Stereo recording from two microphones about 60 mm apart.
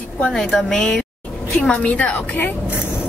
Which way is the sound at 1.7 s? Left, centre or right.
Left.